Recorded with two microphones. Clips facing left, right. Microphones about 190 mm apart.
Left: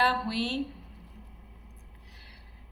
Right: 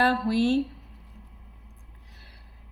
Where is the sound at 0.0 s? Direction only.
45° right (ahead or behind).